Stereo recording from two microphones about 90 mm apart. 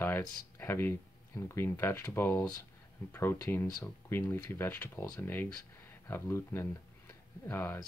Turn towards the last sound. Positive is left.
turn(degrees=25)  # may be behind; listen again after turning